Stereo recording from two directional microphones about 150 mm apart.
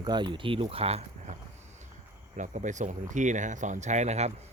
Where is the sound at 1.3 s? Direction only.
50° right (ahead or behind).